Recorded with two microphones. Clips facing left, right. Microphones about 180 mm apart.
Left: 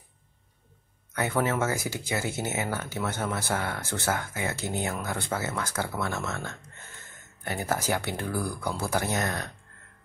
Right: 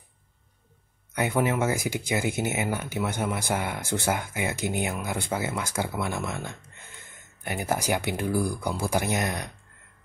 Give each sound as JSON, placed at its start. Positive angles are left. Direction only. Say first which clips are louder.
{"t": 1.1, "sound": "speech", "louder": "right 2 dB", "side_deg": -15}